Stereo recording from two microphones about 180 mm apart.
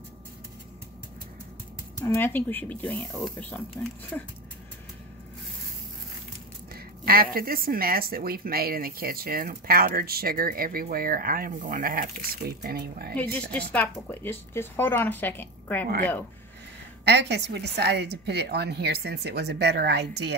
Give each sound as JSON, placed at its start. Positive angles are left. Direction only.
{"t": 2.0, "sound": "speech", "side_deg": 15}
{"t": 6.7, "sound": "a woman's voice", "side_deg": -55}
{"t": 13.1, "sound": "speech", "side_deg": 10}
{"t": 17.0, "sound": "a woman's voice", "side_deg": -70}